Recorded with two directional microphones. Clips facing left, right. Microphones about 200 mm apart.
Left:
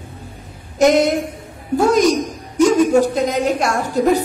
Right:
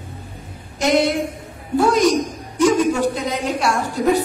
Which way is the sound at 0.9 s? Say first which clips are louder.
Left 2 dB; 40° left (ahead or behind).